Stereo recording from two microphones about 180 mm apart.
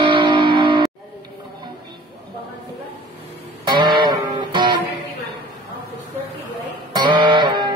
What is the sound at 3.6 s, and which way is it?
Music, 25° right (ahead or behind).